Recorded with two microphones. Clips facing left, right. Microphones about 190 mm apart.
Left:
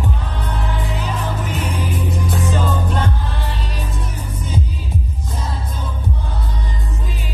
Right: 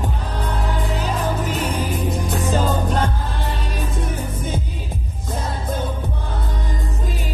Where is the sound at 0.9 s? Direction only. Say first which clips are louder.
Right 2 dB; 40° right (ahead or behind).